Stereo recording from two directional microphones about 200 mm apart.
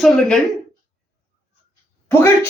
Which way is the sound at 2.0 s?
15° left (ahead or behind).